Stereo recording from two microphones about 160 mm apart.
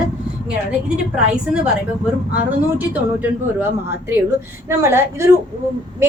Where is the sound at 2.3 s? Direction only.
10° right (ahead or behind).